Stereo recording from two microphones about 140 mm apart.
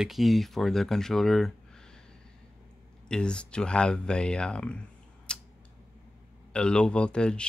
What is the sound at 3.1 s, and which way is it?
Speech, 5° left (ahead or behind).